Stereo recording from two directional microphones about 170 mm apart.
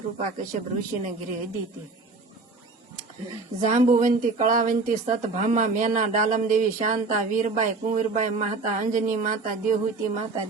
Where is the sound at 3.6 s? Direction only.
45° right (ahead or behind).